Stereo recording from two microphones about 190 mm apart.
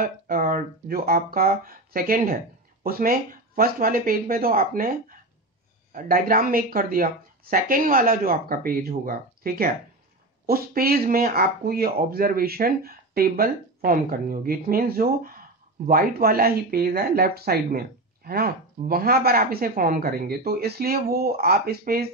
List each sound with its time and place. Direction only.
0.0 s speech: 45° right (ahead or behind)
5.9 s speech: 50° right (ahead or behind)